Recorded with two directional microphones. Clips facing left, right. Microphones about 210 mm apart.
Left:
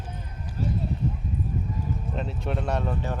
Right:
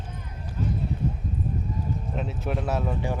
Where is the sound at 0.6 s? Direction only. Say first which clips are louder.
Even; 40° left (ahead or behind).